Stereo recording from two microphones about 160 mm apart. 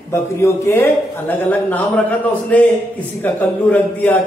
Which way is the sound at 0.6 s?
10° left (ahead or behind).